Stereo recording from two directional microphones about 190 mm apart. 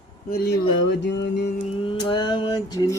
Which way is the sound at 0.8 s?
65° left (ahead or behind).